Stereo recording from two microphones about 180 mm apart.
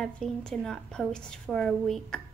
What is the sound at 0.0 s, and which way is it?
A woman's voice, 5° left (ahead or behind).